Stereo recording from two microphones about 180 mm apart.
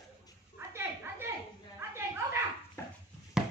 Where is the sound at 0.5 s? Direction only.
15° right (ahead or behind).